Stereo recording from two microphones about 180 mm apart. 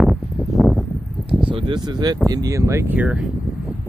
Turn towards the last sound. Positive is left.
turn(degrees=-5)  # may be behind; listen again after turning